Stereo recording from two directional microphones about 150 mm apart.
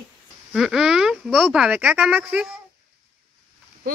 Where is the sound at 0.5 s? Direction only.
Centre (ahead or behind).